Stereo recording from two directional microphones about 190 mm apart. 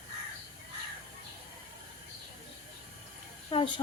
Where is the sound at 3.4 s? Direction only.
25° left (ahead or behind).